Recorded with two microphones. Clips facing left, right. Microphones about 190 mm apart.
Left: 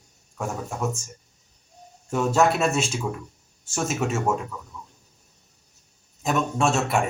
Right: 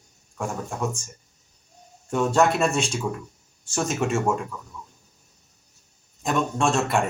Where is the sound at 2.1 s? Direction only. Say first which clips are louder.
Even; 5° left (ahead or behind).